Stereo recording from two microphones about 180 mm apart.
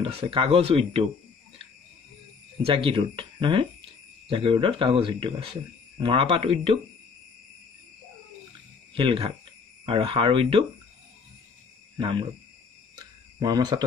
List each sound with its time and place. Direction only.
0.0 s speech: 30° right (ahead or behind)
2.6 s speech: 30° right (ahead or behind)
8.9 s speech: 30° right (ahead or behind)
12.0 s speech: 30° right (ahead or behind)
12.9 s cricket: 20° right (ahead or behind)